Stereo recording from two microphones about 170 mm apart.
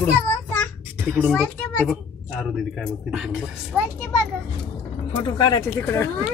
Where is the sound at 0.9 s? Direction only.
10° right (ahead or behind).